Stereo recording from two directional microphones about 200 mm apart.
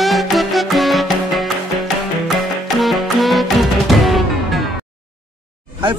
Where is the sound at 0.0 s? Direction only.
Centre (ahead or behind).